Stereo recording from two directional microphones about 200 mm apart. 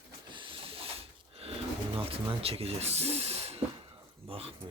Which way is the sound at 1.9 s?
30° right (ahead or behind).